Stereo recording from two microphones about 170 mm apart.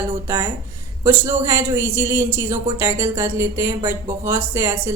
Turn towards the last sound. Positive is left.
turn(degrees=-15)  # may be behind; listen again after turning